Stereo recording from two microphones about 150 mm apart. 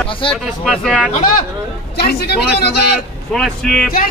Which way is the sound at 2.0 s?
90° left.